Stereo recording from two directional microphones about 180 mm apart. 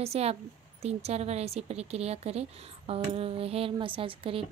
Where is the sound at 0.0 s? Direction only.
35° right (ahead or behind).